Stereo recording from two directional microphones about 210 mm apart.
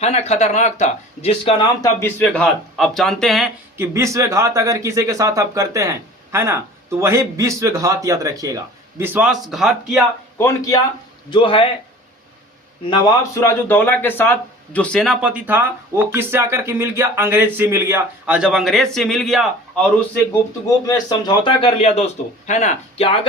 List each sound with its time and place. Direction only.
0.0 s speech: 30° left (ahead or behind)
2.0 s speech: 10° left (ahead or behind)
3.8 s speech: 15° right (ahead or behind)
10.3 s a man's voice: 15° left (ahead or behind)
12.8 s a man's voice: 25° left (ahead or behind)
13.4 s speech: 10° left (ahead or behind)
20.8 s a man's voice: 20° left (ahead or behind)